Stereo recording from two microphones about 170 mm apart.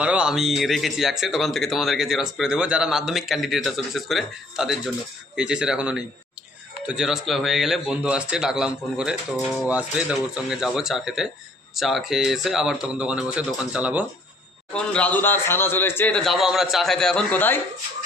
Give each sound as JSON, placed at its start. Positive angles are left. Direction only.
{"t": 0.0, "sound": "speech", "side_deg": -5}
{"t": 14.7, "sound": "speech", "side_deg": 5}